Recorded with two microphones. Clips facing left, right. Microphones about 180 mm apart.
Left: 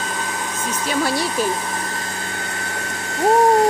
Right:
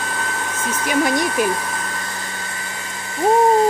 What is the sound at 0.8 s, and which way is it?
Speech, 15° right (ahead or behind).